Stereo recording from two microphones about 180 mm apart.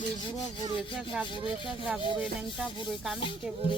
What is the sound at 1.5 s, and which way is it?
Rub, 5° right (ahead or behind).